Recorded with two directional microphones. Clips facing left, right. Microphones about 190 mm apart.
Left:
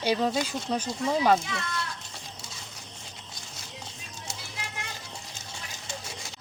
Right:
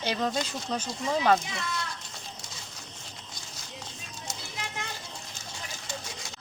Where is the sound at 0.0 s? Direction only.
10° left (ahead or behind).